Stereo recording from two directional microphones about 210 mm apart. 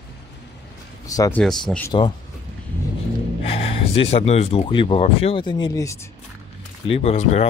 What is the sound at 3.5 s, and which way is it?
Speech, 30° left (ahead or behind).